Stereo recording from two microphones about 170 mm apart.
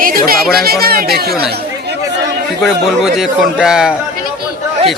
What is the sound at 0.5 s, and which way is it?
Speech, 65° right (ahead or behind).